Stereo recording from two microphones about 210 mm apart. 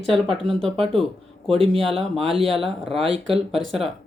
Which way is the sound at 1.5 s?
25° right (ahead or behind).